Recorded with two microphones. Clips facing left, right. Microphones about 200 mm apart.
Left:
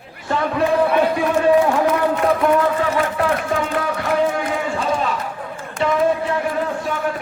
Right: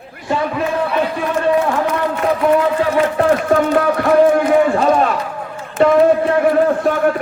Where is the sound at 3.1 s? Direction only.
45° right (ahead or behind).